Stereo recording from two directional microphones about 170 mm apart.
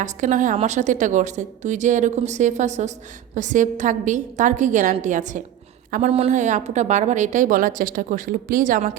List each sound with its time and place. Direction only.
0.0 s a woman's voice: 45° right (ahead or behind)